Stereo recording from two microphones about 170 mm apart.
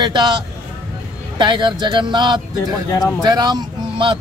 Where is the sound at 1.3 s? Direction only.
25° right (ahead or behind).